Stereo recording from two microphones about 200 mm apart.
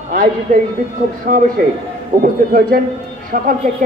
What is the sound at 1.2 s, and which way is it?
A man's voice, 45° right (ahead or behind).